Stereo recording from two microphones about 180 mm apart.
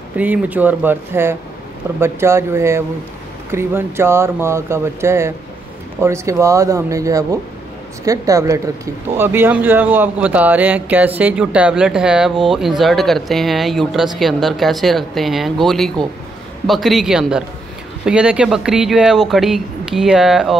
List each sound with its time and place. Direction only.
0.2 s speech: 10° right (ahead or behind)